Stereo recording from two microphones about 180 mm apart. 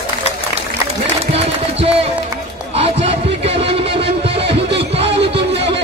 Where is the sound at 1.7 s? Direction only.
35° right (ahead or behind).